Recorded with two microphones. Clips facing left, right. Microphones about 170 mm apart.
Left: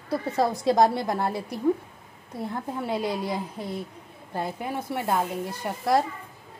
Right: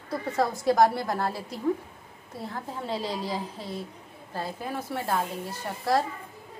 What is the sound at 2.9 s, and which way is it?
Speech, 15° left (ahead or behind).